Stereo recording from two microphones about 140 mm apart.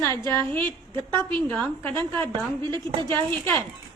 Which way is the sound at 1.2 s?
10° left (ahead or behind).